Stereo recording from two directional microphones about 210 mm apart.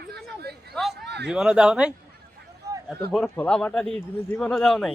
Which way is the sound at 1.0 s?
55° right (ahead or behind).